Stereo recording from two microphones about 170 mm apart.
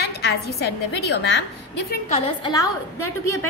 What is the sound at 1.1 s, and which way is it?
Speech, 75° left (ahead or behind).